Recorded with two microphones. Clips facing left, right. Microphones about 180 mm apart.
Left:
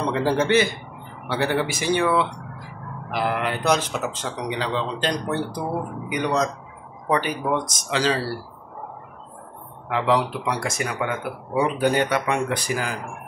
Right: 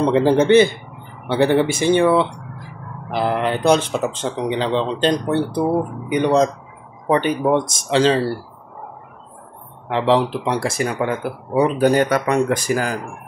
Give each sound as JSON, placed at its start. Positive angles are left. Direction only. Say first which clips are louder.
{"t": 0.1, "sound": "speech", "louder": "right 6 dB", "side_deg": -25}
{"t": 9.8, "sound": "speech", "louder": "right 4 dB", "side_deg": -30}